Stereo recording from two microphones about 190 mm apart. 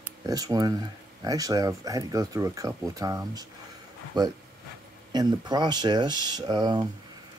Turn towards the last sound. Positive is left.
turn(degrees=-20)  # may be behind; listen again after turning